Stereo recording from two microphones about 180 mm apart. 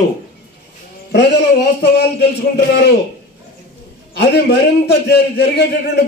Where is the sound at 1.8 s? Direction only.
65° left (ahead or behind).